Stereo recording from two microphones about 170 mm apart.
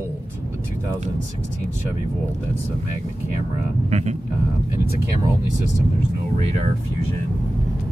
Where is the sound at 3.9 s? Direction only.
40° right (ahead or behind).